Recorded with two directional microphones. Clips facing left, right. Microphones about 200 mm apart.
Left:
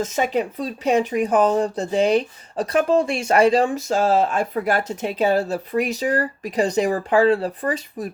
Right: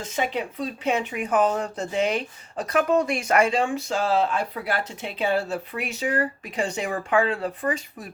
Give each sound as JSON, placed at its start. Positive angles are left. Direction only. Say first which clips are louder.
{"t": 0.0, "sound": "speech", "louder": "left 6 dB", "side_deg": 45}